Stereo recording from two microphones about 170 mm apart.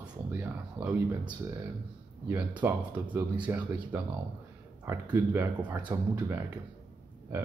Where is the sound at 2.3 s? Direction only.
10° right (ahead or behind).